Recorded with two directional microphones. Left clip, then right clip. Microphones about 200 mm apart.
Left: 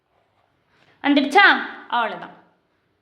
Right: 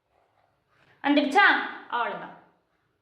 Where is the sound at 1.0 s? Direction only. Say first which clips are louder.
Left 6 dB; 45° left (ahead or behind).